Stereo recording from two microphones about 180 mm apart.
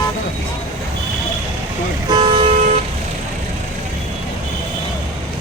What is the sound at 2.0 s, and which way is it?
Toot, 25° right (ahead or behind).